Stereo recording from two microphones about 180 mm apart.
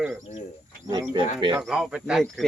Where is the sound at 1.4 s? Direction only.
25° right (ahead or behind).